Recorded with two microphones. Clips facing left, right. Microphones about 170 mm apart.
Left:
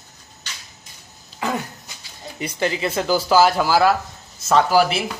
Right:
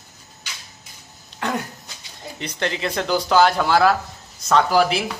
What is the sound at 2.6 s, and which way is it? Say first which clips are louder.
Speech: left 2 dB; 5° left (ahead or behind).